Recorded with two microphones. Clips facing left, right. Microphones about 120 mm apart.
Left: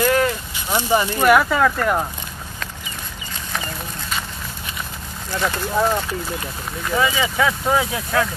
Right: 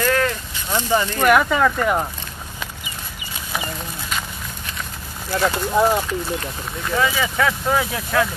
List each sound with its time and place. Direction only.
0.0 s a sound: 15° left (ahead or behind)
1.2 s speech: centre (ahead or behind)
5.3 s speech: 10° right (ahead or behind)
6.9 s speech: 5° left (ahead or behind)